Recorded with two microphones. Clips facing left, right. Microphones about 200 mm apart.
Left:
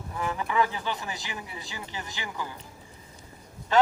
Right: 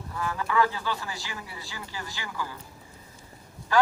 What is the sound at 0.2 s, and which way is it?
A man's voice, 20° left (ahead or behind).